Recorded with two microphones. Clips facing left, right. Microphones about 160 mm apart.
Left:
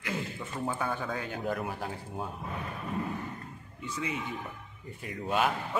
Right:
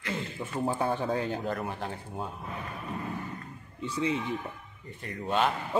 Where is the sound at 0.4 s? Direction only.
30° right (ahead or behind).